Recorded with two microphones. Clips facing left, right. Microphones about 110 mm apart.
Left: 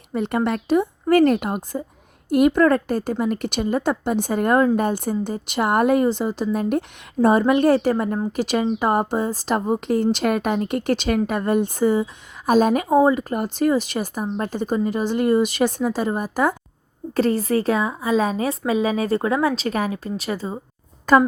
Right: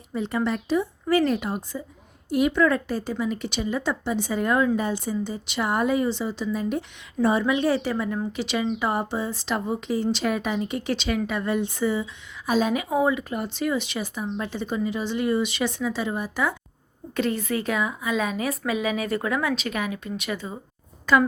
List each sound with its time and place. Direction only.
0.1 s a woman's voice: 60° left (ahead or behind); by 20.6 s 35° left (ahead or behind)
21.1 s a woman's voice: 45° left (ahead or behind)